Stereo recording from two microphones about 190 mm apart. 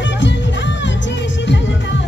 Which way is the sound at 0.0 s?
70° left (ahead or behind).